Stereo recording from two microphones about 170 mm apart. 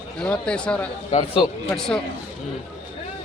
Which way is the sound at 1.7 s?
5° left (ahead or behind).